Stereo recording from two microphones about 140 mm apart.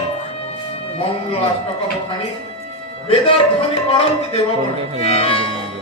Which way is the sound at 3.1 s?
40° left (ahead or behind).